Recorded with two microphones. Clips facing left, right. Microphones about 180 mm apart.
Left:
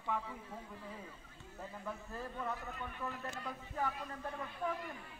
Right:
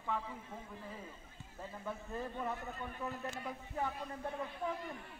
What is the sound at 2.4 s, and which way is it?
Speech, 25° right (ahead or behind).